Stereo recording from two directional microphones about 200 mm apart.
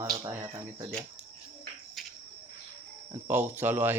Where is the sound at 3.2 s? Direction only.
10° right (ahead or behind).